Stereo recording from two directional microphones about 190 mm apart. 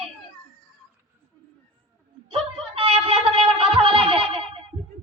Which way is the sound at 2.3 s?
30° right (ahead or behind).